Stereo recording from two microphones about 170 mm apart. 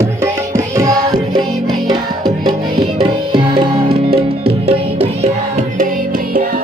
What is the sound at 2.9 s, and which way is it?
Tabla, 25° right (ahead or behind).